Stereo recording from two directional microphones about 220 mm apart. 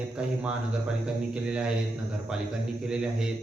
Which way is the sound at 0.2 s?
5° right (ahead or behind).